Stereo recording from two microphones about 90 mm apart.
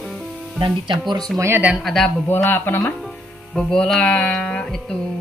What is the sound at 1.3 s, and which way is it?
Speech, 30° right (ahead or behind).